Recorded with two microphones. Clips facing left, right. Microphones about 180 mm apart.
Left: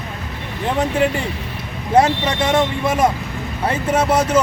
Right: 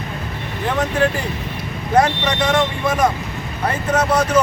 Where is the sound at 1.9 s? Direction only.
25° left (ahead or behind).